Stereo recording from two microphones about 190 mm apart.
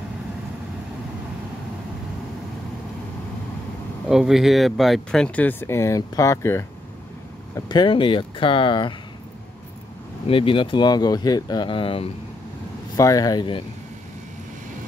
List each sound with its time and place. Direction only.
4.1 s speech: centre (ahead or behind); by 8.9 s 25° left (ahead or behind)
10.2 s speech: 30° left (ahead or behind)